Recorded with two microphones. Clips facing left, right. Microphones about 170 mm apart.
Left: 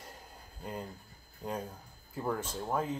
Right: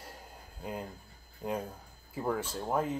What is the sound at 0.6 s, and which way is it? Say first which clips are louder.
Speech: right 2 dB; 5° right (ahead or behind).